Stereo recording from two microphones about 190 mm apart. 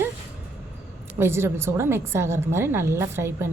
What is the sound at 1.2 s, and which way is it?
A woman's voice, 15° right (ahead or behind).